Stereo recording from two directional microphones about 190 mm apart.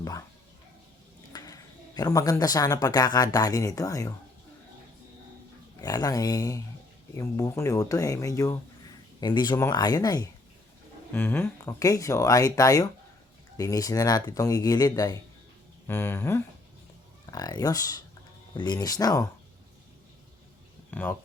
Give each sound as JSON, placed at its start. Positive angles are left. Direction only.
{"t": 1.3, "sound": "speech", "side_deg": 20}
{"t": 5.8, "sound": "speech", "side_deg": 20}
{"t": 20.9, "sound": "speech", "side_deg": 10}